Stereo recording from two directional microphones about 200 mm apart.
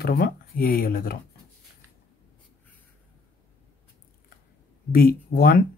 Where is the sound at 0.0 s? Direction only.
50° left (ahead or behind).